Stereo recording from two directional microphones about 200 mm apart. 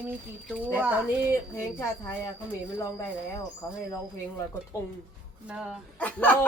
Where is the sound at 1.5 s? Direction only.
15° left (ahead or behind).